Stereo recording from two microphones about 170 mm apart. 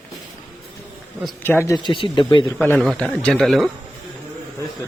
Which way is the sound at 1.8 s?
30° left (ahead or behind).